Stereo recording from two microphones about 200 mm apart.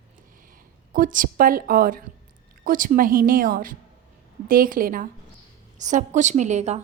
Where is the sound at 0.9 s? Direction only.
45° right (ahead or behind).